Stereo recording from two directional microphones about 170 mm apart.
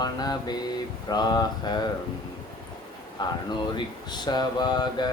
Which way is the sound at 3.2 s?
25° left (ahead or behind).